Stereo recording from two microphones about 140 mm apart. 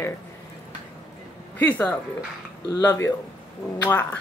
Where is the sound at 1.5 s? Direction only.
10° left (ahead or behind).